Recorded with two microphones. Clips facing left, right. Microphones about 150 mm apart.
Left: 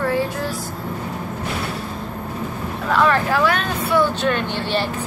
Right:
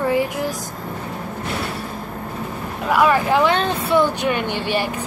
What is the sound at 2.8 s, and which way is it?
Speech, 10° right (ahead or behind).